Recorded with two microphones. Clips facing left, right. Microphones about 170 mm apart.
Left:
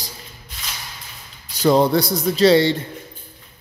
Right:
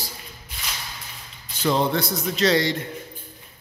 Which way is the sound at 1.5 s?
40° left (ahead or behind).